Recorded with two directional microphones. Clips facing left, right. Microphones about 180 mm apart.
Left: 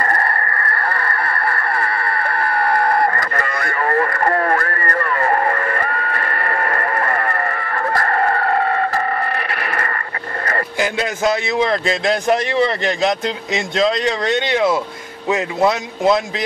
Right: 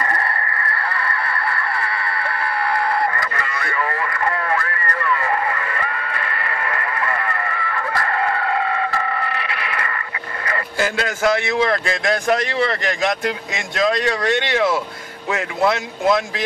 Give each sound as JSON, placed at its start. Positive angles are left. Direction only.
{"t": 0.0, "sound": "honk", "side_deg": 45}
{"t": 10.8, "sound": "a man's voice", "side_deg": 20}